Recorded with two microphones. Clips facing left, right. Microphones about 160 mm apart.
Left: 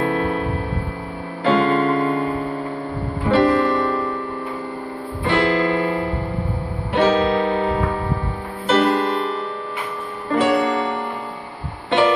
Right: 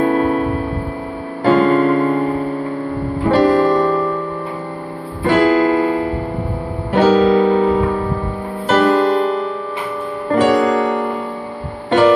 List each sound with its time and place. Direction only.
0.0 s music: 40° right (ahead or behind)
1.4 s music: 45° right (ahead or behind)
3.3 s music: 40° right (ahead or behind)
5.2 s music: 40° right (ahead or behind)
6.9 s music: 45° right (ahead or behind)